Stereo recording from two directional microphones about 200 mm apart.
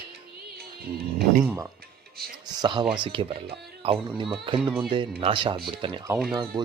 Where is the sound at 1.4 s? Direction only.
10° right (ahead or behind).